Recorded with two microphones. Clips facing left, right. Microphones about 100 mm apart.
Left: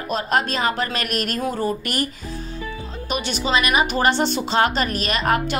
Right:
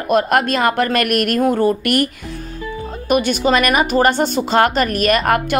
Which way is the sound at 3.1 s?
50° right (ahead or behind).